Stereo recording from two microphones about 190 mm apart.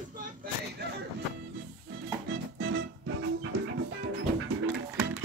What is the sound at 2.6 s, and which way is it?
Music, 60° right (ahead or behind).